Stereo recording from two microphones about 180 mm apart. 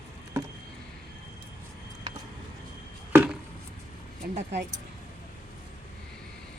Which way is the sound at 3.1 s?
10° right (ahead or behind).